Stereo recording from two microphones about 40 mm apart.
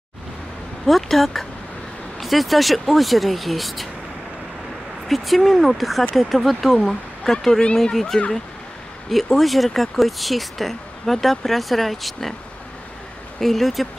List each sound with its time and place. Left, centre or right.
0.8 s speech: centre
5.0 s speech: centre
13.4 s speech: centre